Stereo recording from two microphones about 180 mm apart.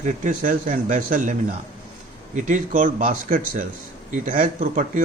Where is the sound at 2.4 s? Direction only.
45° right (ahead or behind).